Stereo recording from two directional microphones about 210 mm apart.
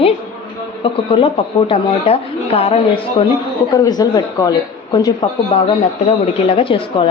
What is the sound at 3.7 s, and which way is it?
Speech, 15° left (ahead or behind).